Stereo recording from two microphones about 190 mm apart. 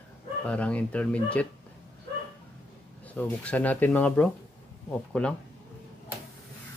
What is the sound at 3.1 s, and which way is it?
Speech, 10° left (ahead or behind).